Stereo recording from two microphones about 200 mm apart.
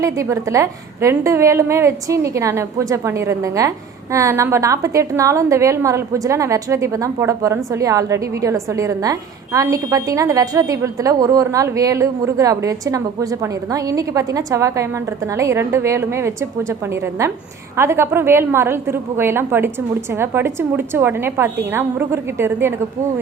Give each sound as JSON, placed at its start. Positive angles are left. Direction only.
{"t": 0.0, "sound": "a woman's voice", "side_deg": -15}